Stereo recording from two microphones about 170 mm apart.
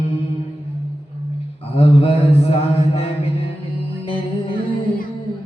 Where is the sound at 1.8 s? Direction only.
35° left (ahead or behind).